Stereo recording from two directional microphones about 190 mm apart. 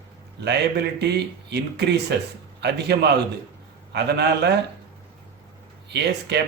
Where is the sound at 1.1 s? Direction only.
60° right (ahead or behind).